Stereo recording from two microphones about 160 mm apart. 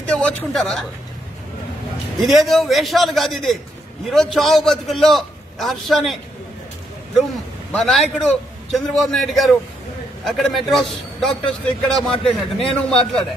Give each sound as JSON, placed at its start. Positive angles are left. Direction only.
{"t": 0.1, "sound": "a woman's voice", "side_deg": 5}
{"t": 2.2, "sound": "a man's voice", "side_deg": 0}
{"t": 7.7, "sound": "a man's voice", "side_deg": 0}